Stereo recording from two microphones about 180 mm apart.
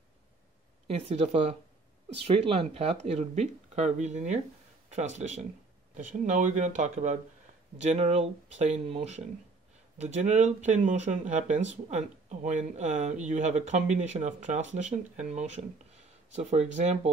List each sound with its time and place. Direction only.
0.8 s speech: 35° right (ahead or behind)